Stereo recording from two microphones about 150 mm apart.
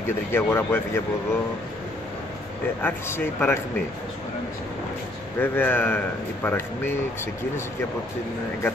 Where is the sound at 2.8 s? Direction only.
15° left (ahead or behind).